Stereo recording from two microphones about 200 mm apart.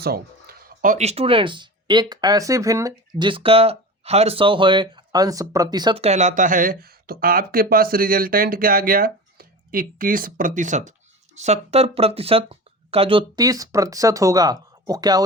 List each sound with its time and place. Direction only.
0.0 s speech: 50° right (ahead or behind); by 15.2 s 20° right (ahead or behind)